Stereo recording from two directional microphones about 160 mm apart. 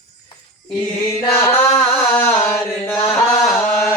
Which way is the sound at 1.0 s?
15° left (ahead or behind).